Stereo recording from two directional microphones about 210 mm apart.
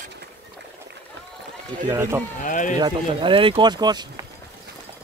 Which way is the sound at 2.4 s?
40° left (ahead or behind).